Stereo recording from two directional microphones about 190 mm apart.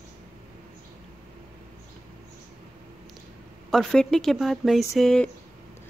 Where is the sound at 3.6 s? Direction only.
Centre (ahead or behind).